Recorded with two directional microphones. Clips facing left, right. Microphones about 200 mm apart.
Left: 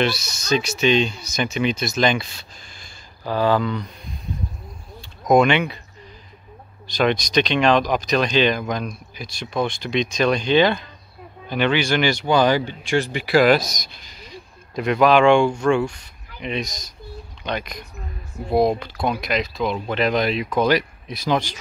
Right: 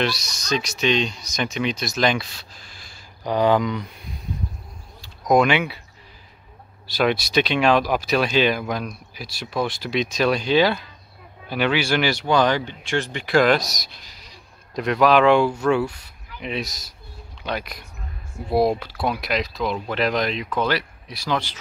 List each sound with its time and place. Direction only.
0.0 s speech: centre (ahead or behind)
3.3 s speech: 15° right (ahead or behind)
5.3 s speech: 5° right (ahead or behind)
6.9 s speech: 5° right (ahead or behind); by 21.5 s 15° left (ahead or behind)